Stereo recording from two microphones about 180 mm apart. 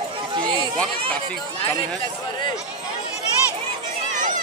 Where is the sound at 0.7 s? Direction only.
5° left (ahead or behind).